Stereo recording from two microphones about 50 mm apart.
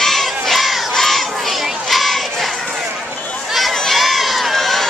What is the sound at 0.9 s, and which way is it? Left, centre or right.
Battle cry, centre.